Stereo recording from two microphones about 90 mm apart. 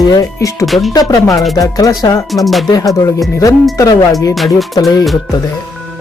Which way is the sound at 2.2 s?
Centre (ahead or behind).